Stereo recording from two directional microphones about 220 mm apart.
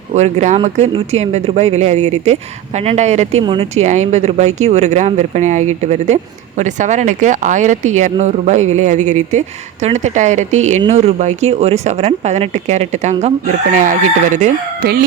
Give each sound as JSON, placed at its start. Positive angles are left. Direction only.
{"t": 0.1, "sound": "speech", "side_deg": -30}